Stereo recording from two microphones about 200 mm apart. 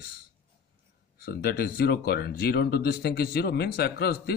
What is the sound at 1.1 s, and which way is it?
Speech, 50° left (ahead or behind).